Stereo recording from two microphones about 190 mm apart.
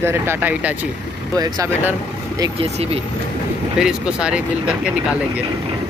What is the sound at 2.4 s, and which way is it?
Speech, 30° right (ahead or behind).